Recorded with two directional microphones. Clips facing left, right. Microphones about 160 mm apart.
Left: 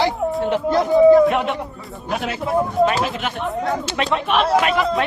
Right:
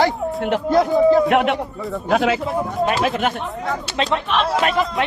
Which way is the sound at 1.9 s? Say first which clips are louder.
Right 8 dB; 90° right.